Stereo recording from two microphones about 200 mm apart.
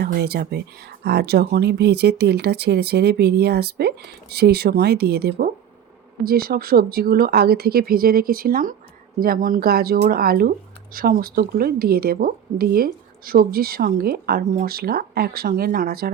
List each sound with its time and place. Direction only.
0.0 s speech: 55° right (ahead or behind)